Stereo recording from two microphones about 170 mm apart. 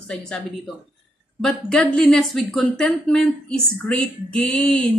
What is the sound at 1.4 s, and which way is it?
Speech, 5° left (ahead or behind).